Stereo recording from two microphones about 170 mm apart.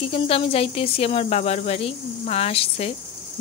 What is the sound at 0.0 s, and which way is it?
Speech, 35° left (ahead or behind).